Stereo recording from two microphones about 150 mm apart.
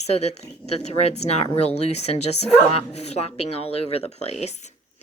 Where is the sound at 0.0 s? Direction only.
45° left (ahead or behind).